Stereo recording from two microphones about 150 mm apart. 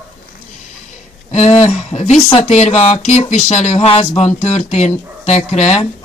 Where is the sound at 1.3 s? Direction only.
45° left (ahead or behind).